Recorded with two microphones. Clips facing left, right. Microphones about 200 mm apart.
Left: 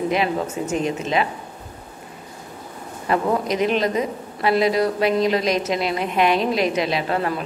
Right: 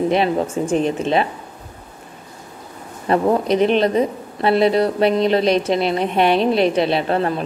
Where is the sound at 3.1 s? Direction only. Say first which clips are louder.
Right 4 dB; 30° right (ahead or behind).